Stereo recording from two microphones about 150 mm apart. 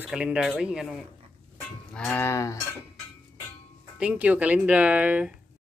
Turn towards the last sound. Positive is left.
turn(degrees=-10)  # may be behind; listen again after turning